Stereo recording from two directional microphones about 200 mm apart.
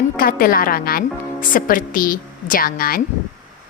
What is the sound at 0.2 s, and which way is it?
A woman's voice, 45° left (ahead or behind).